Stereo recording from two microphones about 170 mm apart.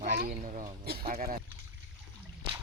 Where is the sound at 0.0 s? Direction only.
55° right (ahead or behind).